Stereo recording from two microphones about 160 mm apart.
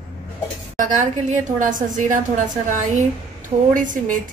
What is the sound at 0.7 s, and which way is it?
A woman's voice, 55° right (ahead or behind).